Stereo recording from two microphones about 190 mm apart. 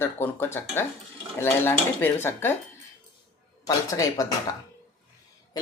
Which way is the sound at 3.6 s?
20° left (ahead or behind).